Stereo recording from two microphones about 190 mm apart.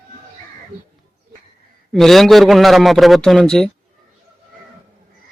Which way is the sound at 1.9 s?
Centre (ahead or behind).